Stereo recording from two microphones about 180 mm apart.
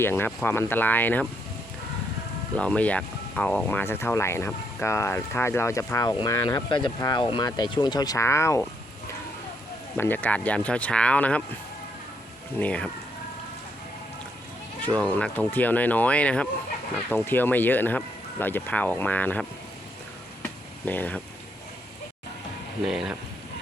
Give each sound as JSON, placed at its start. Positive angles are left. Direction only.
{"t": 0.0, "sound": "speech", "side_deg": 10}
{"t": 2.6, "sound": "speech", "side_deg": 5}
{"t": 10.0, "sound": "speech", "side_deg": 10}
{"t": 12.5, "sound": "speech", "side_deg": 5}
{"t": 14.8, "sound": "speech", "side_deg": 10}
{"t": 20.4, "sound": "a sound", "side_deg": 10}
{"t": 22.9, "sound": "speech", "side_deg": -5}